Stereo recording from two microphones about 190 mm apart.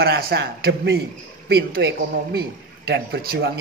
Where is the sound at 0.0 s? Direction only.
55° right (ahead or behind).